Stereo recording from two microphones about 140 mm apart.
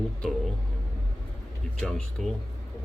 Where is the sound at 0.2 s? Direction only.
5° left (ahead or behind).